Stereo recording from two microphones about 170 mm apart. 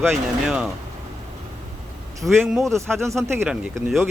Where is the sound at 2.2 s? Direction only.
Centre (ahead or behind).